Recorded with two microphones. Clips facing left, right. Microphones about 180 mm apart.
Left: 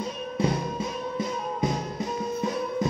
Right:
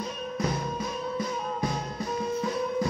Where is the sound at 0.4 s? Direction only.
30° left (ahead or behind).